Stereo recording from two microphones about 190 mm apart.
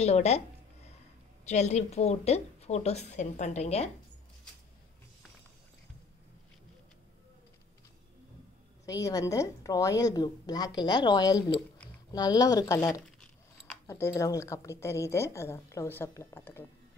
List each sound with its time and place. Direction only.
0.0 s speech: 35° left (ahead or behind)
1.4 s speech: 35° left (ahead or behind)
8.8 s a woman's voice: 20° left (ahead or behind)